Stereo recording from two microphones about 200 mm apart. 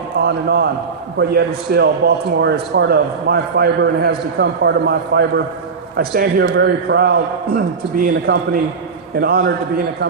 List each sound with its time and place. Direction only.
0.3 s a man's voice: 55° right (ahead or behind)